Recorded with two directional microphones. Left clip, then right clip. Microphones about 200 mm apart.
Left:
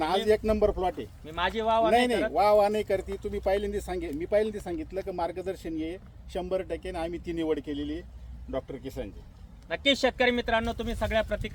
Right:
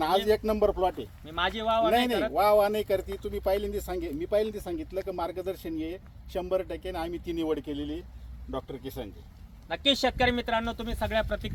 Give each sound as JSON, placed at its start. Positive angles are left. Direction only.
{"t": 0.3, "sound": "speech", "side_deg": -30}
{"t": 1.2, "sound": "speech", "side_deg": -10}
{"t": 1.9, "sound": "speech", "side_deg": -20}
{"t": 9.6, "sound": "speech", "side_deg": -10}